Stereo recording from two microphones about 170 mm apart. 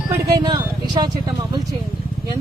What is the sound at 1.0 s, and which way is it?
Speech, 25° right (ahead or behind).